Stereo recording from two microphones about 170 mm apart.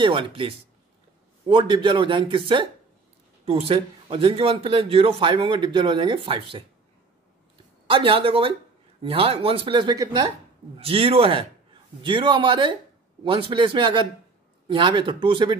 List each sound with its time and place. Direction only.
0.0 s a man's voice: 30° right (ahead or behind)
7.8 s a man's voice: 30° right (ahead or behind)